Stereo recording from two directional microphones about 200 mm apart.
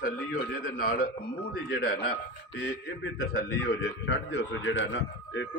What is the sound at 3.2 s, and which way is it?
A man's voice, 55° left (ahead or behind).